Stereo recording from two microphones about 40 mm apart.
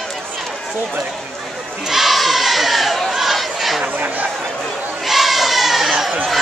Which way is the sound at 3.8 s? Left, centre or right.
Right.